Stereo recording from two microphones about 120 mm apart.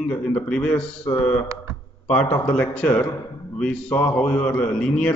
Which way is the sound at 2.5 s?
10° left (ahead or behind).